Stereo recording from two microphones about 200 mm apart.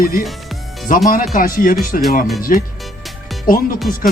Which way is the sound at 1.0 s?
45° left (ahead or behind).